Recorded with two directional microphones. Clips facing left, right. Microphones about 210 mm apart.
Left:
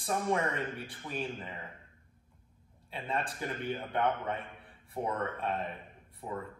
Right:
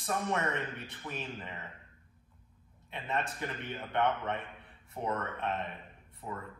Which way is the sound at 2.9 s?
30° left (ahead or behind).